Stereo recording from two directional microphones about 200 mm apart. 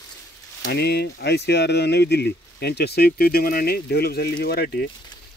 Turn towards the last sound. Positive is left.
turn(degrees=55)  # may be behind; listen again after turning